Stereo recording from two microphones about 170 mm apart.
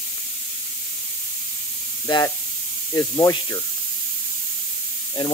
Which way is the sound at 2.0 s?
20° left (ahead or behind).